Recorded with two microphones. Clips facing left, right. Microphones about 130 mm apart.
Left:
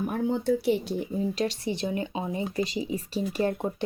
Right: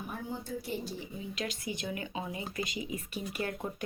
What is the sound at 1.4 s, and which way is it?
Speech, 30° left (ahead or behind).